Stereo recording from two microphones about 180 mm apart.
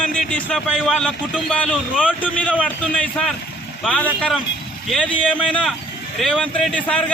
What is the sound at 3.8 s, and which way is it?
A man's voice, 5° left (ahead or behind).